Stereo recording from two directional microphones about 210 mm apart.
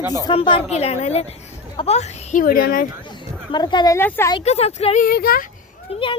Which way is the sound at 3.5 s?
20° left (ahead or behind).